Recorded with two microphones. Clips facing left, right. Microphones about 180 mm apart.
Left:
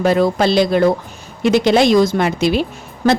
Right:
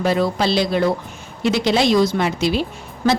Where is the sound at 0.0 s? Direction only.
50° left (ahead or behind).